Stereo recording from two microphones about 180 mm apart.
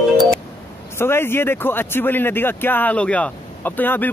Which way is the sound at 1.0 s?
15° left (ahead or behind).